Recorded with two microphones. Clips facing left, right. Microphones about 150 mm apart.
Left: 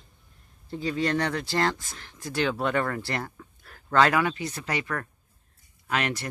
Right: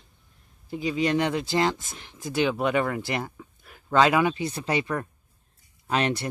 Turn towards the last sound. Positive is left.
turn(degrees=-25)  # may be behind; listen again after turning